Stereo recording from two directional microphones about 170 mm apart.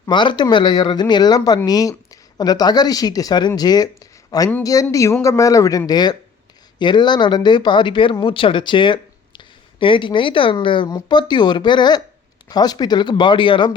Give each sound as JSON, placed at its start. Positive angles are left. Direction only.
{"t": 0.0, "sound": "speech", "side_deg": 25}